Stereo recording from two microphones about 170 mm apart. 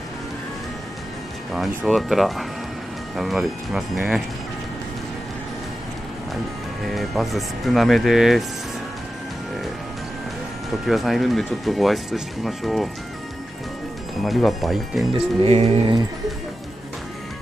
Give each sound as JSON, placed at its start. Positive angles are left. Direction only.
{"t": 1.9, "sound": "speech", "side_deg": 0}
{"t": 6.9, "sound": "speech", "side_deg": 0}
{"t": 10.9, "sound": "speech", "side_deg": 0}
{"t": 14.2, "sound": "speech", "side_deg": 0}
{"t": 15.1, "sound": "music", "side_deg": -35}